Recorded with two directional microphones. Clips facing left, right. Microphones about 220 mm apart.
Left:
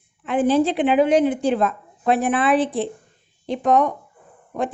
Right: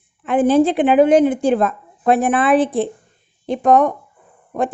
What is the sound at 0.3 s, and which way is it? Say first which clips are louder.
A woman's voice: right 4 dB; 50° right (ahead or behind).